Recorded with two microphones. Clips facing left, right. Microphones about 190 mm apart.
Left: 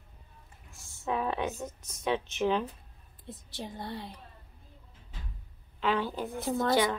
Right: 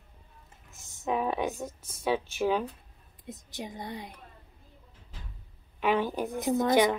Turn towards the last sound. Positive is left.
turn(degrees=-20)  # may be behind; listen again after turning